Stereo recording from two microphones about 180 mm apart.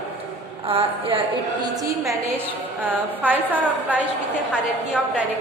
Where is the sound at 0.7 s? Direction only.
30° right (ahead or behind).